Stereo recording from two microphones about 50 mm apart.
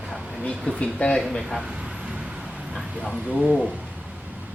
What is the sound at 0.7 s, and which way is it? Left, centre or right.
Speech, left.